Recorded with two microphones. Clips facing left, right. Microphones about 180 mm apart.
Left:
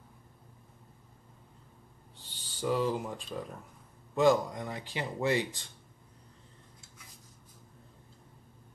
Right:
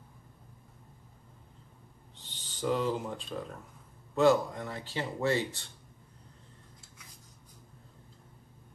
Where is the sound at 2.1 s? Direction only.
10° left (ahead or behind).